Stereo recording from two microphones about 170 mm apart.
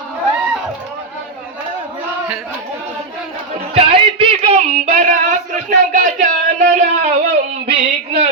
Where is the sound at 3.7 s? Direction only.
30° right (ahead or behind).